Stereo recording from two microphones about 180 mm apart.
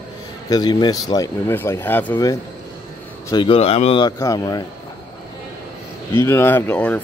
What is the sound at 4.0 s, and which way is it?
Speech, 20° left (ahead or behind).